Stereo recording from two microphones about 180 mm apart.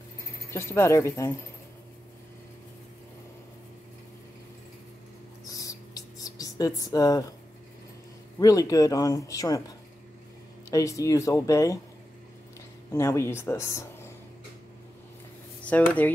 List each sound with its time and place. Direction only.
0.5 s speech: 15° left (ahead or behind)
5.5 s a sound: 20° left (ahead or behind)
8.4 s speech: 20° left (ahead or behind)
12.9 s speech: 15° left (ahead or behind)
15.6 s speech: 10° left (ahead or behind)